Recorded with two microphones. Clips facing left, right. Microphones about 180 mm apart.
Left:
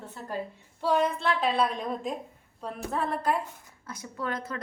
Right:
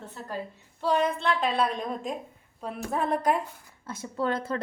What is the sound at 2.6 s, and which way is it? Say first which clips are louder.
Speech: right 2 dB; 10° right (ahead or behind).